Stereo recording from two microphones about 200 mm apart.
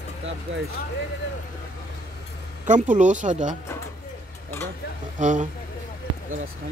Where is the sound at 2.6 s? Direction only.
40° right (ahead or behind).